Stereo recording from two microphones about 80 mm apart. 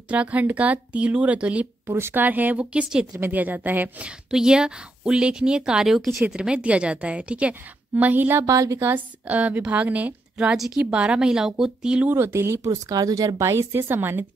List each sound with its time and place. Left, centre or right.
0.1 s a woman's voice: centre
1.9 s a woman's voice: right
4.3 s a woman's voice: centre; by 8.5 s right
8.5 s a woman's voice: right
8.7 s a woman's voice: right
10.3 s a woman's voice: centre
12.1 s speech: right